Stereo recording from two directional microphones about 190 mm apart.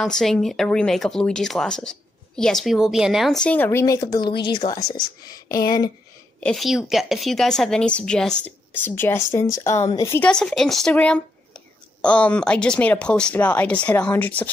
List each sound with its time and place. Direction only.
0.0 s speech: centre (ahead or behind); by 5.9 s 20° left (ahead or behind)
6.4 s speech: centre (ahead or behind)